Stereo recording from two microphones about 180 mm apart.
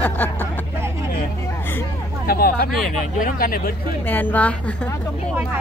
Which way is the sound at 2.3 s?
55° left (ahead or behind).